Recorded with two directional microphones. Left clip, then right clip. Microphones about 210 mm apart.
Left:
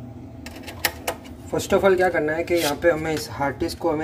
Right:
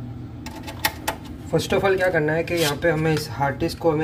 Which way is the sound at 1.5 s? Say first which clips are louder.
Left 1 dB; 15° left (ahead or behind).